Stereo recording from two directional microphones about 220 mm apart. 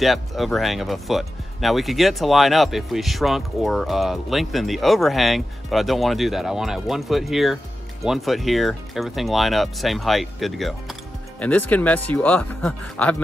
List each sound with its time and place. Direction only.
0.0 s speech: centre (ahead or behind)